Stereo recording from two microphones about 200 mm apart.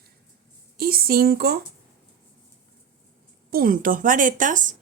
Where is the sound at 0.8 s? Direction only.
50° right (ahead or behind).